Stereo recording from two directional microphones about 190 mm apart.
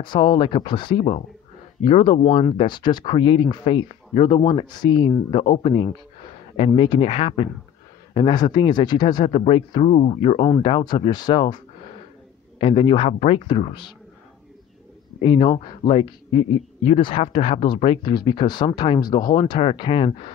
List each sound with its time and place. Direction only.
0.0 s a man's voice: 25° left (ahead or behind)
12.5 s a man's voice: 30° left (ahead or behind)
15.2 s a man's voice: 30° left (ahead or behind)